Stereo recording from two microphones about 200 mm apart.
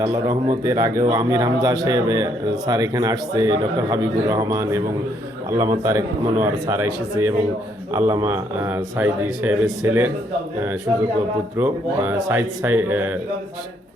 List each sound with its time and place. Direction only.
0.0 s speech: 15° right (ahead or behind)
11.5 s speech: 10° right (ahead or behind)